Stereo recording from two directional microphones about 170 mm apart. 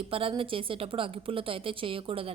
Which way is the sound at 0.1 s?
30° right (ahead or behind).